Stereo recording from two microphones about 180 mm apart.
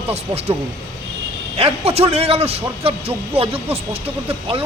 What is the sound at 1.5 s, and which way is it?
Speech, 35° right (ahead or behind).